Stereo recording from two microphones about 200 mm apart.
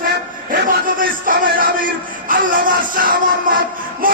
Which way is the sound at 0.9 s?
45° right (ahead or behind).